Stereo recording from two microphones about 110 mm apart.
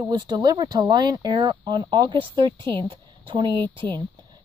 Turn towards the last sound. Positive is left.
turn(degrees=-45)  # may be behind; listen again after turning